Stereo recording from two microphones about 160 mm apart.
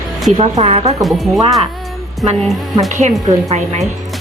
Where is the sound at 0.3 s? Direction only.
45° right (ahead or behind).